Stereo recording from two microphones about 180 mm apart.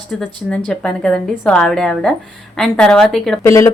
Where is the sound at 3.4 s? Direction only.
15° left (ahead or behind).